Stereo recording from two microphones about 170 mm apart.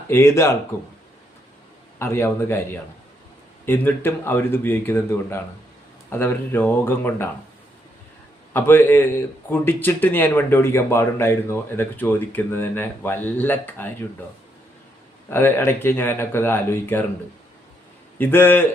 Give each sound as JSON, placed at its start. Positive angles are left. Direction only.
{"t": 0.1, "sound": "a man's voice", "side_deg": 15}
{"t": 2.0, "sound": "a man's voice", "side_deg": 15}
{"t": 3.7, "sound": "a man's voice", "side_deg": 15}
{"t": 8.5, "sound": "a man's voice", "side_deg": 10}
{"t": 15.3, "sound": "a man's voice", "side_deg": 15}
{"t": 18.2, "sound": "a man's voice", "side_deg": 10}